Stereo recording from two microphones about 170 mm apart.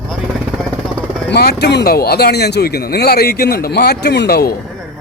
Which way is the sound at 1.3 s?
70° left (ahead or behind).